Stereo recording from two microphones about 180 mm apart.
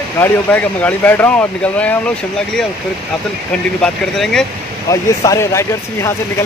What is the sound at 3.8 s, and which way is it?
Speech, centre (ahead or behind).